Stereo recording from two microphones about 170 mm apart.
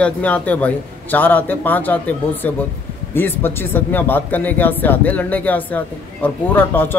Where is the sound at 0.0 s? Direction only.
10° left (ahead or behind).